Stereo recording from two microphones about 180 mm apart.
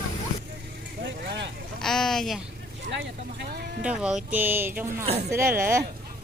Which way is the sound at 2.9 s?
75° right (ahead or behind).